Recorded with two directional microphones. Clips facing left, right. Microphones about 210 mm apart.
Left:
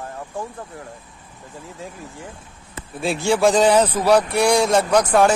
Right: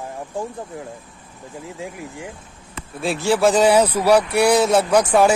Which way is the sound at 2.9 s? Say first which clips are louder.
Even; centre (ahead or behind).